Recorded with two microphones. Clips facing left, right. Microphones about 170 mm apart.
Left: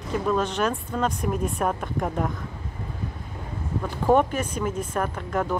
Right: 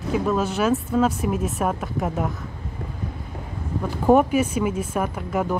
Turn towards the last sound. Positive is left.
turn(degrees=-10)  # may be behind; listen again after turning